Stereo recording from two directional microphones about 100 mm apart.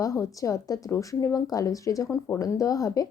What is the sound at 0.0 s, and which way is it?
Speech, 35° left (ahead or behind).